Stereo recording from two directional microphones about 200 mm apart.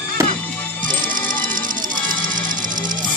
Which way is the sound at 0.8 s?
40° right (ahead or behind).